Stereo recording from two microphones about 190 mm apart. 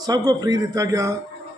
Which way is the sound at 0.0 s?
20° right (ahead or behind).